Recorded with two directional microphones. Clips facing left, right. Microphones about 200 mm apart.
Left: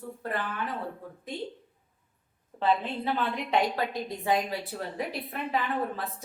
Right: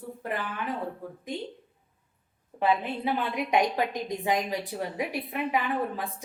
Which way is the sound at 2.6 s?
10° right (ahead or behind).